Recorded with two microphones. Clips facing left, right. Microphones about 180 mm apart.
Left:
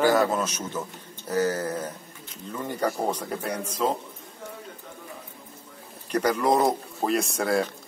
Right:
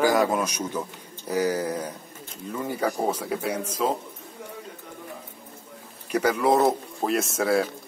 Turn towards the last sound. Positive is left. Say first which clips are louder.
# right 2 dB
turn(degrees=0)  # may be behind; listen again after turning